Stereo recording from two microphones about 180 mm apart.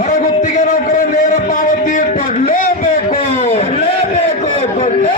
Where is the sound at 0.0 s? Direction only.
45° left (ahead or behind).